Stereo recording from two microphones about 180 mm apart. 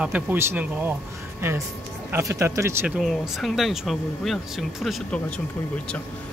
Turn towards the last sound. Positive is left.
turn(degrees=5)  # may be behind; listen again after turning